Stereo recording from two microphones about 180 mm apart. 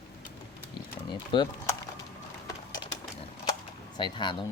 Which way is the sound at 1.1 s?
25° left (ahead or behind).